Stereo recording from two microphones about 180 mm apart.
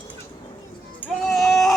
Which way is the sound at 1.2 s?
Centre (ahead or behind).